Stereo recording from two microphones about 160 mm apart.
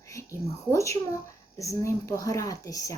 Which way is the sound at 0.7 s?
20° left (ahead or behind).